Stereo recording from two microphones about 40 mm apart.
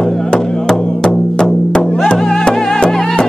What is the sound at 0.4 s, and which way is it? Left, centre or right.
Music, centre.